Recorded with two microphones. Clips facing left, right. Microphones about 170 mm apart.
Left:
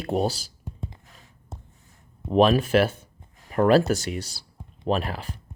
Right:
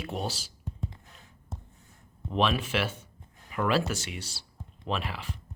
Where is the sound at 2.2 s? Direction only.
40° left (ahead or behind).